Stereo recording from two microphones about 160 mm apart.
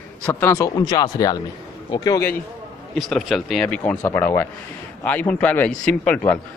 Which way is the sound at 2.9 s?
Centre (ahead or behind).